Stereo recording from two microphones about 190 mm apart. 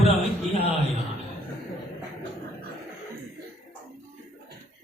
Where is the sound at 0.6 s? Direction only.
30° right (ahead or behind).